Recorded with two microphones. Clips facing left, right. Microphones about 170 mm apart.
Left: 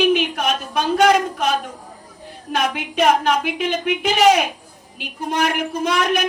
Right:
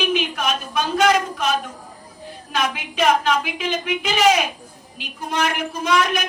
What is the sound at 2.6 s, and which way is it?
A woman's voice, 55° left (ahead or behind).